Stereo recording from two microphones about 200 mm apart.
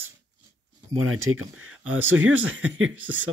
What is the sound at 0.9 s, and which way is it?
Speech, 90° right.